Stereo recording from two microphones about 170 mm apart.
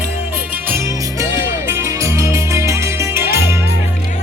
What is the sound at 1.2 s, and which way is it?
Music, 15° right (ahead or behind).